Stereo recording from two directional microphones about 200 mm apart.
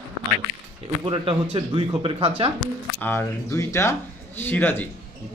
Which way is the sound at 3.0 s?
10° left (ahead or behind).